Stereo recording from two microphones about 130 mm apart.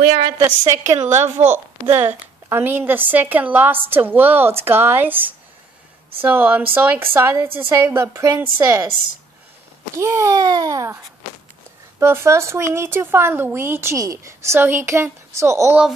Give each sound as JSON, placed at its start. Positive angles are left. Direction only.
{"t": 0.7, "sound": "a woman's voice", "side_deg": -20}
{"t": 9.9, "sound": "speech", "side_deg": -20}
{"t": 12.0, "sound": "speech", "side_deg": -20}